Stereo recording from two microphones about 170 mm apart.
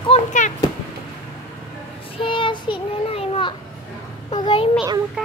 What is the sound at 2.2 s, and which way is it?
Child singing, 30° left (ahead or behind).